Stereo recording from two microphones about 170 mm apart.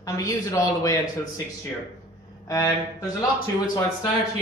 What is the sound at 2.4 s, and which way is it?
Speech, 20° left (ahead or behind).